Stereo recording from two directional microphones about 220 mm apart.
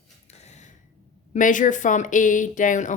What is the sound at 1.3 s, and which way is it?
Speech, 35° left (ahead or behind).